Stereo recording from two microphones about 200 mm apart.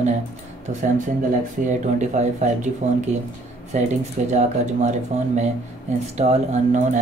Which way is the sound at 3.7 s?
35° right (ahead or behind).